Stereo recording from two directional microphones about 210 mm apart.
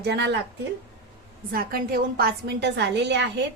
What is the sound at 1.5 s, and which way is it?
A woman's voice, 45° right (ahead or behind).